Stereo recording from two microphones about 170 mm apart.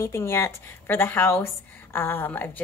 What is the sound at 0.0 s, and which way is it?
Speech, 15° left (ahead or behind).